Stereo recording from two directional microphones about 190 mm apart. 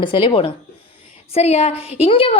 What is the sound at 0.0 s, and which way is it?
A woman's voice, 25° left (ahead or behind).